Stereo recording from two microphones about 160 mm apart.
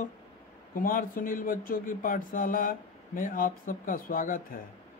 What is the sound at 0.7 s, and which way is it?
Speech, 60° left (ahead or behind).